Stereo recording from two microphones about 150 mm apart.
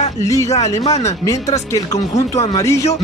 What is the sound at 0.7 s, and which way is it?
Speech, 45° left (ahead or behind).